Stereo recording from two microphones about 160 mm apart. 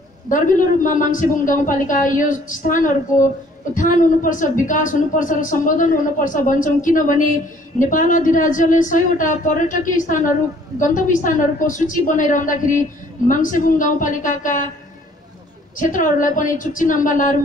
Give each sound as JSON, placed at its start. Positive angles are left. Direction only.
{"t": 0.3, "sound": "a woman's voice", "side_deg": 55}
{"t": 15.8, "sound": "a woman's voice", "side_deg": 55}